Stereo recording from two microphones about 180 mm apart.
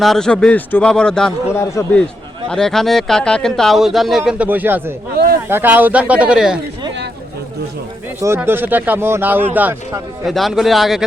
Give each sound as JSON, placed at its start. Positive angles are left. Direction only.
{"t": 0.0, "sound": "a man's voice", "side_deg": 5}
{"t": 5.1, "sound": "speech", "side_deg": -60}
{"t": 5.5, "sound": "speech", "side_deg": -10}
{"t": 8.4, "sound": "speech", "side_deg": -10}